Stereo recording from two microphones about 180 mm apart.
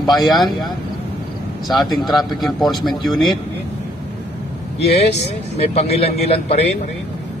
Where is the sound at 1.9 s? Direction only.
Centre (ahead or behind).